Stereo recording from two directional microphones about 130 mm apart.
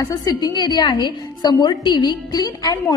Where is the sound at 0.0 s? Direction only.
30° left (ahead or behind).